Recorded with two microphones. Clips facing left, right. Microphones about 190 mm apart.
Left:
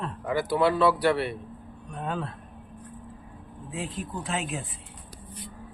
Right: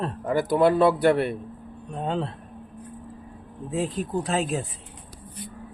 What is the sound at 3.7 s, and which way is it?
Speech, 40° right (ahead or behind).